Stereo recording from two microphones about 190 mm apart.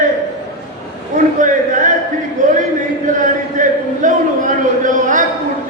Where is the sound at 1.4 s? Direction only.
40° right (ahead or behind).